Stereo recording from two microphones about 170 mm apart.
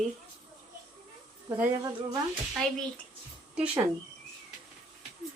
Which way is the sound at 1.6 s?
20° right (ahead or behind).